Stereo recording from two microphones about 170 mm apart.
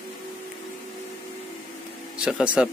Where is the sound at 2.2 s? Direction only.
5° right (ahead or behind).